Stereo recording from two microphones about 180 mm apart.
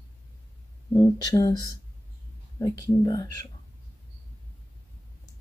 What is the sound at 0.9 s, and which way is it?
Speech, 20° left (ahead or behind).